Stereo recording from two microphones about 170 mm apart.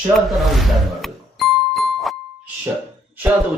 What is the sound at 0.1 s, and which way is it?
Music, centre (ahead or behind).